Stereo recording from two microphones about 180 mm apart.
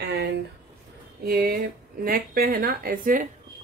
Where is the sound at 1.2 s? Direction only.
55° right (ahead or behind).